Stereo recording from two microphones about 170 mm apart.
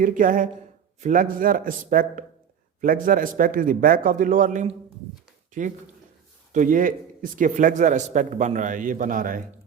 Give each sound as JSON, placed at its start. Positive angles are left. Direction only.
{"t": 0.0, "sound": "a man's voice", "side_deg": -55}